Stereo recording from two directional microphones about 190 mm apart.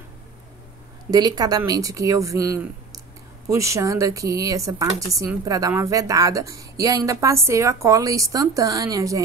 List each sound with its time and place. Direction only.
1.1 s speech: 20° right (ahead or behind)